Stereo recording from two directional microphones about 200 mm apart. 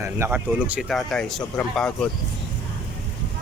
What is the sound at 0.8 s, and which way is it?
Speech, centre (ahead or behind).